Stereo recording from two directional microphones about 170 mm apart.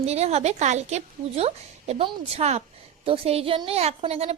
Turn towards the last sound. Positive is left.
turn(degrees=-35)  # may be behind; listen again after turning